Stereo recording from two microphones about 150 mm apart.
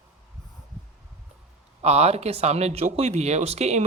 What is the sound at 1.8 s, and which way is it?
Speech, 45° right (ahead or behind).